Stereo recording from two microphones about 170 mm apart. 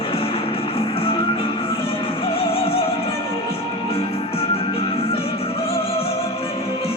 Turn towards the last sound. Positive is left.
turn(degrees=35)  # may be behind; listen again after turning